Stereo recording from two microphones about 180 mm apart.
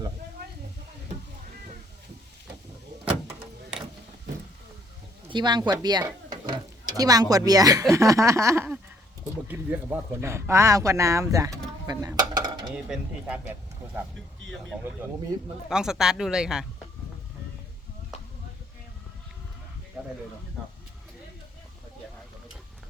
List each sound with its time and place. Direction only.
3.0 s a sound: 10° right (ahead or behind)
5.3 s speech: 25° right (ahead or behind)
12.7 s speech: 5° right (ahead or behind)
15.7 s speech: 5° right (ahead or behind)